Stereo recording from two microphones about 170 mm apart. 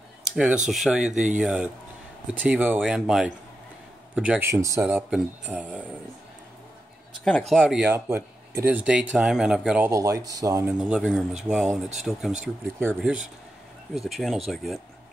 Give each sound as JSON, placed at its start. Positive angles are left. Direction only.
{"t": 0.7, "sound": "speech", "side_deg": 0}
{"t": 1.1, "sound": "speech", "side_deg": -45}
{"t": 1.4, "sound": "speech", "side_deg": -5}
{"t": 7.2, "sound": "speech", "side_deg": 5}
{"t": 10.7, "sound": "speech", "side_deg": -5}
{"t": 13.9, "sound": "speech", "side_deg": 0}